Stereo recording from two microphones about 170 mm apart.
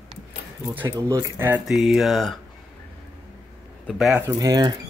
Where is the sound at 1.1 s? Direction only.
15° right (ahead or behind).